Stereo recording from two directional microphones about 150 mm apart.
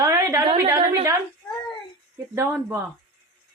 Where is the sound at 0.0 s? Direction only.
20° right (ahead or behind).